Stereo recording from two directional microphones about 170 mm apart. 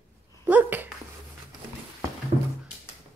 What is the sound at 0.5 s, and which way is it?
Dog, 10° right (ahead or behind).